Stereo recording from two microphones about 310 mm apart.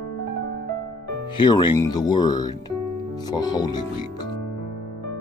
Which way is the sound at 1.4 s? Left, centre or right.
Centre.